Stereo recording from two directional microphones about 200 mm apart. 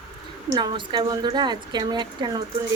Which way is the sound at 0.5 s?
25° right (ahead or behind).